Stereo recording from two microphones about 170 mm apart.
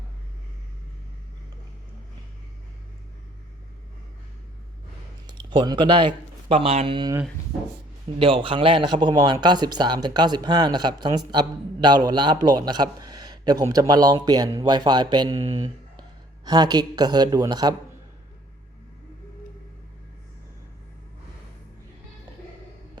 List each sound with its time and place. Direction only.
5.2 s speech: 25° right (ahead or behind)
8.2 s a man's voice: 30° right (ahead or behind)